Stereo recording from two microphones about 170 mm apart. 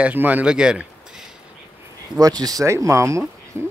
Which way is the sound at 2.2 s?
20° right (ahead or behind).